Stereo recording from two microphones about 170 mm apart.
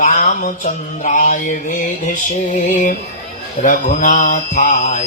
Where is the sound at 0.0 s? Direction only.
45° left (ahead or behind).